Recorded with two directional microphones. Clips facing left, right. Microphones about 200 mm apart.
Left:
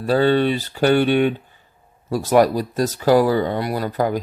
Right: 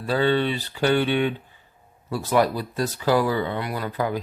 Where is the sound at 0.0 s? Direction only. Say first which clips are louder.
Left 5 dB; 40° left (ahead or behind).